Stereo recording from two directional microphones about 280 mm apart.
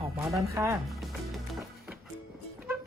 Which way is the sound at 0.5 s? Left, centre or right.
Centre.